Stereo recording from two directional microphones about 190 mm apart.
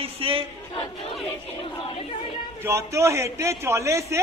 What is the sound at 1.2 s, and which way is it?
Speech, 30° left (ahead or behind).